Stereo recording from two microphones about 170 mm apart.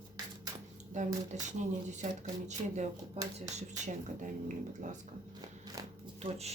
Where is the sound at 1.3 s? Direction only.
45° right (ahead or behind).